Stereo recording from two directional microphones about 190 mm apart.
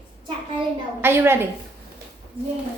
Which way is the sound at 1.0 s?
10° right (ahead or behind).